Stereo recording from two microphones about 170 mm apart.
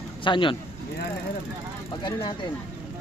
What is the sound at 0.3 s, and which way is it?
Speech, 30° left (ahead or behind).